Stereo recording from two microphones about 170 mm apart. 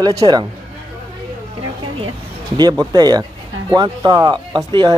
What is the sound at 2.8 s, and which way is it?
Speech, 25° right (ahead or behind).